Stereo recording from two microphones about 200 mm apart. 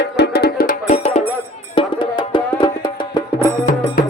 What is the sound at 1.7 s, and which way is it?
Music, 25° left (ahead or behind).